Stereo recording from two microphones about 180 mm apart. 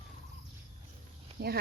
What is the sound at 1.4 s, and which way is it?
Speech, 60° right (ahead or behind).